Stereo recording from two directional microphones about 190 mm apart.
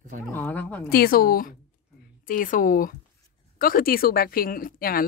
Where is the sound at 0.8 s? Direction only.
55° left (ahead or behind).